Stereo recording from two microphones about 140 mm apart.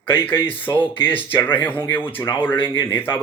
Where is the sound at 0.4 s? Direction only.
15° left (ahead or behind).